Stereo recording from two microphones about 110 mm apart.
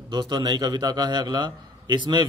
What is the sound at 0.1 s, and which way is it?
A man's voice, 40° right (ahead or behind).